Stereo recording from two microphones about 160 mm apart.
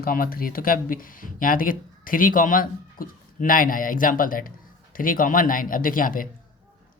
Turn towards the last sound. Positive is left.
turn(degrees=60)  # may be behind; listen again after turning